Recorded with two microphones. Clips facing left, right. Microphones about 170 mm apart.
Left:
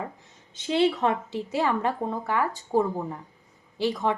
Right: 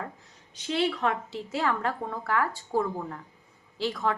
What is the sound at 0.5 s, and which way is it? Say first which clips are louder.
A woman's voice: left 5 dB; 20° left (ahead or behind).